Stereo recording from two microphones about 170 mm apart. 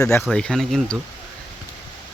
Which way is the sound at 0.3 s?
5° left (ahead or behind).